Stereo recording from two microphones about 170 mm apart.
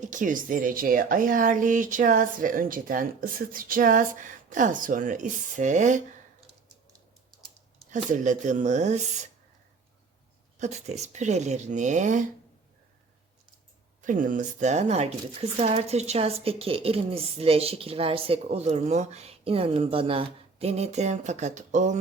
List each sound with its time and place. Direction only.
0.0 s speech: 50° right (ahead or behind)
7.9 s speech: 50° right (ahead or behind)
10.6 s speech: 40° right (ahead or behind)
14.0 s speech: 50° right (ahead or behind)